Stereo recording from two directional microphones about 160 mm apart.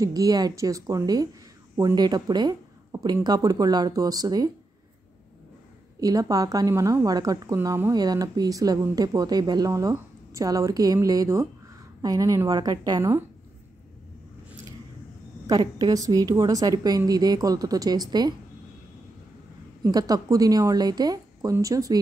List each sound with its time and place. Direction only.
0.0 s a woman's voice: 20° right (ahead or behind)
5.9 s a woman's voice: 20° right (ahead or behind)
15.4 s a woman's voice: 25° right (ahead or behind)
19.8 s a woman's voice: 25° right (ahead or behind)